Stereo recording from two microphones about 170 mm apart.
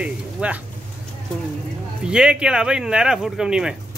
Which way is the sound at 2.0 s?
5° right (ahead or behind).